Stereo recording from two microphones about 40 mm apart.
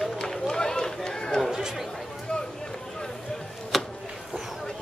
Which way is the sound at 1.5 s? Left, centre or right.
Centre.